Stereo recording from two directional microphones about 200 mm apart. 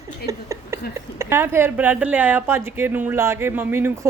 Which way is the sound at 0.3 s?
15° right (ahead or behind).